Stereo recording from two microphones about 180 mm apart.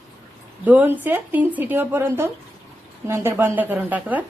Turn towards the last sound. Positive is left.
turn(degrees=-10)  # may be behind; listen again after turning